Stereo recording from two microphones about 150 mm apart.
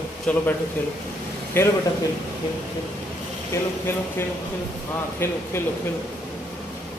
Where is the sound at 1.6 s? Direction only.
15° left (ahead or behind).